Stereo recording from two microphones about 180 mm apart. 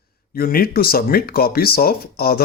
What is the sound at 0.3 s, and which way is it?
Speech, 55° left (ahead or behind).